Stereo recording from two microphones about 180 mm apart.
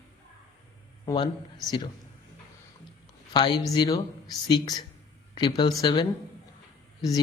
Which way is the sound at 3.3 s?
25° left (ahead or behind).